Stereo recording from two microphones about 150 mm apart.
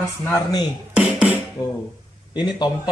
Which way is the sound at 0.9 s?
10° right (ahead or behind).